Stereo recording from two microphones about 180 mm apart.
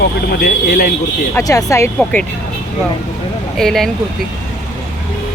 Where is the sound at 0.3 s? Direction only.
60° left (ahead or behind).